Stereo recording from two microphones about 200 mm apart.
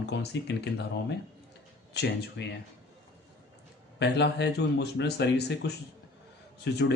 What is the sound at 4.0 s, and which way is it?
Speech, 60° left (ahead or behind).